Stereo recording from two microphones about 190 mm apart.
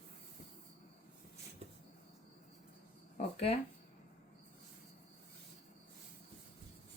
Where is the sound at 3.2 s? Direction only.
35° left (ahead or behind).